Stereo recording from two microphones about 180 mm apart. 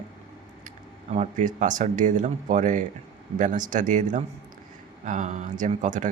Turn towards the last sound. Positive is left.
turn(degrees=-45)  # may be behind; listen again after turning